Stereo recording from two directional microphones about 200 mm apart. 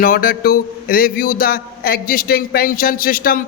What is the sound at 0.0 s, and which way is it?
A man's voice, 45° left (ahead or behind).